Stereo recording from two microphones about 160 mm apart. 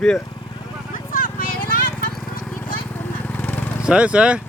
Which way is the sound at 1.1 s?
60° left (ahead or behind).